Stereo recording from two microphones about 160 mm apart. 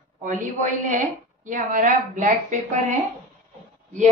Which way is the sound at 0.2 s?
55° right (ahead or behind).